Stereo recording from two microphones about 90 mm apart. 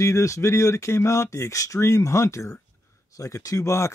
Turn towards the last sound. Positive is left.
turn(degrees=35)  # may be behind; listen again after turning